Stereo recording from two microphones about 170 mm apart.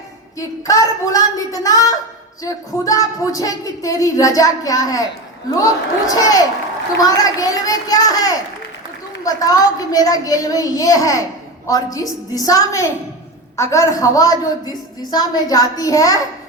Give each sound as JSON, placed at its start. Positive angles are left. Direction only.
{"t": 0.3, "sound": "a child's voice", "side_deg": 20}
{"t": 6.1, "sound": "a child's voice", "side_deg": 20}